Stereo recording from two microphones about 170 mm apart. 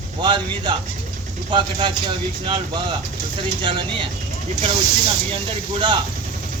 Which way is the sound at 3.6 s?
30° right (ahead or behind).